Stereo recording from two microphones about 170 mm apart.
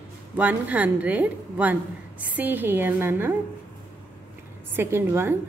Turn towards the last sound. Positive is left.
turn(degrees=-15)  # may be behind; listen again after turning